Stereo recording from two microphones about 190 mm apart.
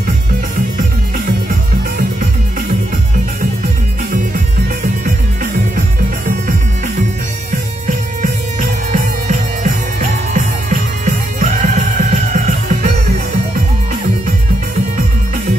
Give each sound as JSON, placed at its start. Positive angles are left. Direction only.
{"t": 0.7, "sound": "music", "side_deg": -45}
{"t": 5.0, "sound": "music", "side_deg": -45}
{"t": 8.2, "sound": "music", "side_deg": -45}